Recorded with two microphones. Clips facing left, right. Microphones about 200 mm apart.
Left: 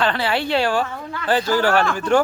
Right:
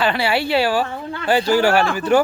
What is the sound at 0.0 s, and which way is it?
Speech, 10° right (ahead or behind).